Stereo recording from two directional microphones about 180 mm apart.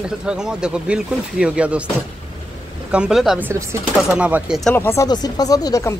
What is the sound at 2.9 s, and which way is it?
Speech, 5° right (ahead or behind).